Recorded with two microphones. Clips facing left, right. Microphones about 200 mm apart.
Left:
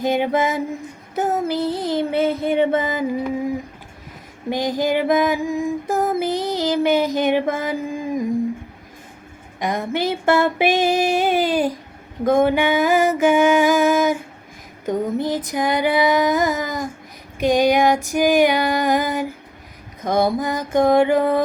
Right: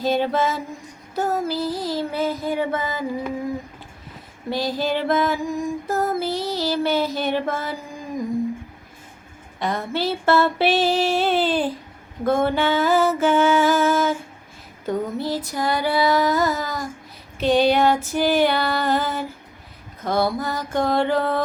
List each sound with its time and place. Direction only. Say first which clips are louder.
0.0 s female singing: left 2 dB; 15° left (ahead or behind)
1.1 s a sound: left 2 dB; 20° left (ahead or behind)
4.4 s female singing: left 3 dB; 15° left (ahead or behind)
9.6 s female singing: left 2 dB; 15° left (ahead or behind)